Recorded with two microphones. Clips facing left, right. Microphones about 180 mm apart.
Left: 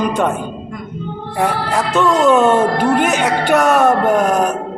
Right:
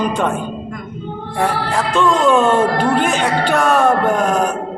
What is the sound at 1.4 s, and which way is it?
Speech, 5° left (ahead or behind).